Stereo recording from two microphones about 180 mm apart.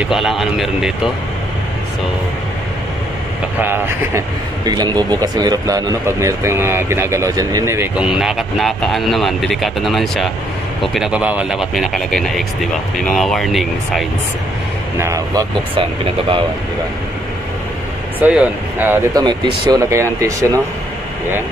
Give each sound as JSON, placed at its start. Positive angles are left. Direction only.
{"t": 0.0, "sound": "speech", "side_deg": 0}
{"t": 3.6, "sound": "speech", "side_deg": -10}
{"t": 4.6, "sound": "speech", "side_deg": -20}
{"t": 8.0, "sound": "speech", "side_deg": -5}
{"t": 15.0, "sound": "speech", "side_deg": -20}
{"t": 18.2, "sound": "speech", "side_deg": -10}
{"t": 19.1, "sound": "speech", "side_deg": -25}